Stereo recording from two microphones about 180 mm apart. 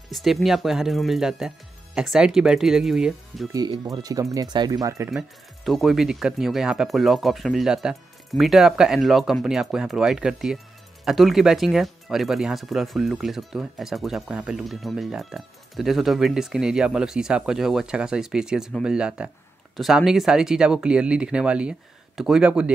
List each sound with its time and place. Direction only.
0.1 s speech: centre (ahead or behind)
3.5 s speech: 20° right (ahead or behind)
5.1 s speech: centre (ahead or behind)